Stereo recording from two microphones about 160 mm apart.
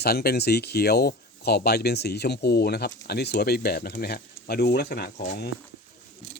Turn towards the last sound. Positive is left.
turn(degrees=75)  # may be behind; listen again after turning